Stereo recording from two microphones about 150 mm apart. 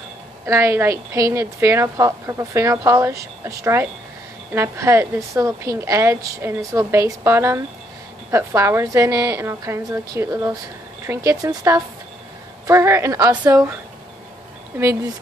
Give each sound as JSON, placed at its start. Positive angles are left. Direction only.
{"t": 0.5, "sound": "a woman's voice", "side_deg": -15}